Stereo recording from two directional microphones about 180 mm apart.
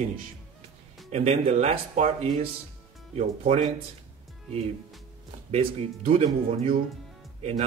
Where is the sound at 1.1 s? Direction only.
35° right (ahead or behind).